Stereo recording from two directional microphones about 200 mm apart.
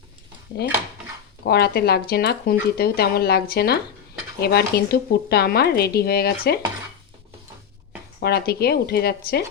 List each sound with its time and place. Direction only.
1.5 s speech: 50° left (ahead or behind)
8.2 s speech: 50° left (ahead or behind)